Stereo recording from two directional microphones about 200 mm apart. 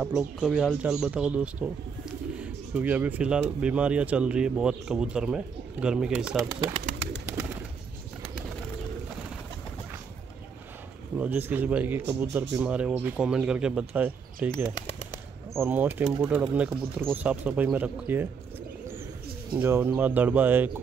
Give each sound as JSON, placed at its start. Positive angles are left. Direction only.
{"t": 0.0, "sound": "speech", "side_deg": -5}
{"t": 7.2, "sound": "bird", "side_deg": -15}
{"t": 11.1, "sound": "speech", "side_deg": -10}
{"t": 14.7, "sound": "speech", "side_deg": 20}
{"t": 15.5, "sound": "speech", "side_deg": -10}
{"t": 19.6, "sound": "speech", "side_deg": -10}